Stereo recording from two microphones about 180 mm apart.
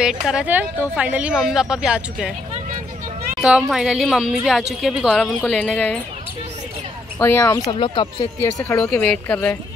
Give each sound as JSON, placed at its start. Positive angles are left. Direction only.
{"t": 0.0, "sound": "a woman's voice", "side_deg": -5}
{"t": 3.3, "sound": "a woman's voice", "side_deg": -5}
{"t": 7.2, "sound": "speech", "side_deg": 10}
{"t": 8.9, "sound": "speech", "side_deg": 5}